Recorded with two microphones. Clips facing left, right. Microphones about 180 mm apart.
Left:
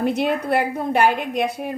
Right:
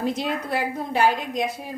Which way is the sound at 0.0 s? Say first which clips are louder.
Left 5 dB; 60° left (ahead or behind).